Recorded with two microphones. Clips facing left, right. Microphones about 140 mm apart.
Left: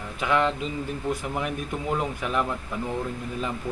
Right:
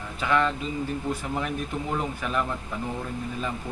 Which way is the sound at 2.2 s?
15° left (ahead or behind).